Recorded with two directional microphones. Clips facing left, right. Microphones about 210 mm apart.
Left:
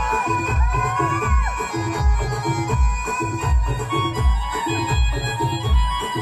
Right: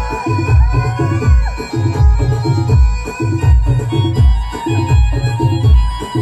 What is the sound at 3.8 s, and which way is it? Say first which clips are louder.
Music: right 7 dB; 40° right (ahead or behind).